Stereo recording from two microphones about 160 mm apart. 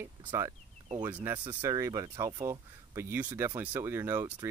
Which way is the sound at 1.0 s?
15° right (ahead or behind).